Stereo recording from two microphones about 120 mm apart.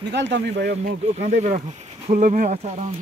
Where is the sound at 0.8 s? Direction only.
90° right.